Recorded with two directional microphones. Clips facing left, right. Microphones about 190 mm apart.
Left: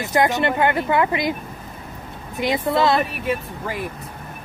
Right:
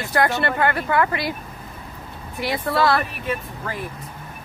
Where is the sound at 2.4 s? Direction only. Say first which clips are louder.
Left 2 dB; 20° left (ahead or behind).